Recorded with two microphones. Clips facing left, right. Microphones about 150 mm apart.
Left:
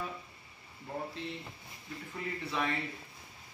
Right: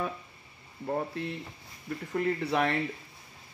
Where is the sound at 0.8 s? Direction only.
60° right (ahead or behind).